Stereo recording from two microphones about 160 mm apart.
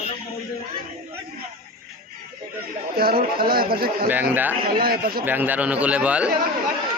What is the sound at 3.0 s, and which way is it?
Speech, 70° right (ahead or behind).